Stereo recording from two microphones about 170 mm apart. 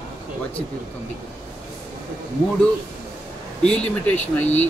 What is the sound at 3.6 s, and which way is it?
Speech, 5° left (ahead or behind).